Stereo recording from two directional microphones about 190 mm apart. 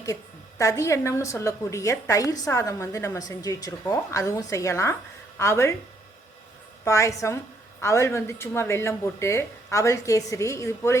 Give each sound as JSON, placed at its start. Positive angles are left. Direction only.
{"t": 0.6, "sound": "a woman's voice", "side_deg": 15}
{"t": 6.8, "sound": "a woman's voice", "side_deg": 15}